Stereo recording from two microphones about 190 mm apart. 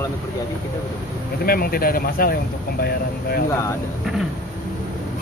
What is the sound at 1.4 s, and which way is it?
Speech, 50° left (ahead or behind).